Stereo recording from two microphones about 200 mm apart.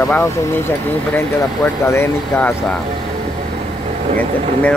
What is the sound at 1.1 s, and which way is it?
Speech, 10° left (ahead or behind).